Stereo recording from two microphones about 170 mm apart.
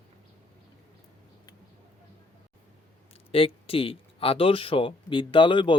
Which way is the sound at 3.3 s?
35° left (ahead or behind).